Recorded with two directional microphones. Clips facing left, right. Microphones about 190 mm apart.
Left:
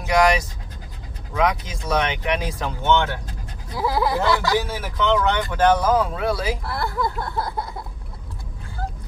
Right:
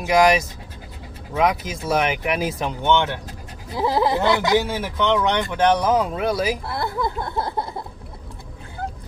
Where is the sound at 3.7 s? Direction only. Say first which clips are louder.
Right 2 dB; 25° right (ahead or behind).